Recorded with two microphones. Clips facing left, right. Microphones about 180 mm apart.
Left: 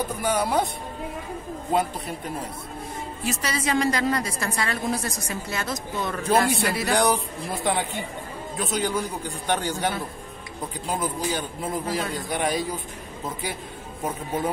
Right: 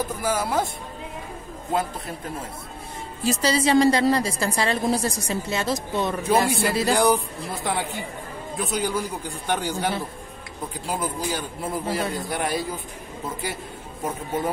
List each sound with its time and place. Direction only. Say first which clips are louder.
0.2 s a man's voice: left 2 dB; 5° right (ahead or behind)
1.7 s a man's voice: left 1 dB; centre (ahead or behind)
3.3 s a woman's voice: right 6 dB; 30° right (ahead or behind)
7.0 s a man's voice: right 2 dB; centre (ahead or behind)